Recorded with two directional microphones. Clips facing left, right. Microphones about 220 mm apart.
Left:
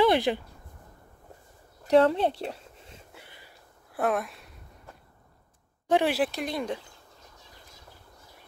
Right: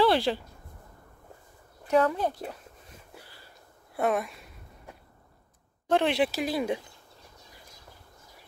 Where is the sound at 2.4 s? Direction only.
25° left (ahead or behind).